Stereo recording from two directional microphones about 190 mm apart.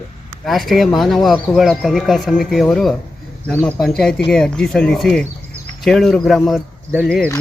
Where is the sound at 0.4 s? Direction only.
Centre (ahead or behind).